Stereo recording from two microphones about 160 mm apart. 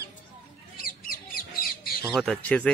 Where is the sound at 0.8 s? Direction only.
60° left (ahead or behind).